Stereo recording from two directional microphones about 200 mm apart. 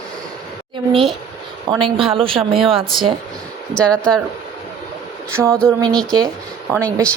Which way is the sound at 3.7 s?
5° left (ahead or behind).